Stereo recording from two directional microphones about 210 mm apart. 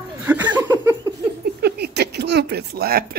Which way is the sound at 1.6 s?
50° right (ahead or behind).